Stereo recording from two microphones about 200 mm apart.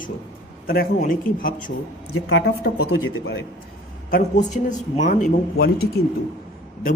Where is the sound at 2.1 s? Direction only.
65° left (ahead or behind).